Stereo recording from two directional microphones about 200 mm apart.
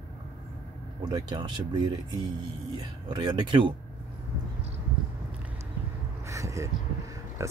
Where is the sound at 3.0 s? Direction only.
25° right (ahead or behind).